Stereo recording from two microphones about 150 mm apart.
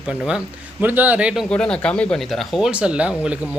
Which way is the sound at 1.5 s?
5° left (ahead or behind).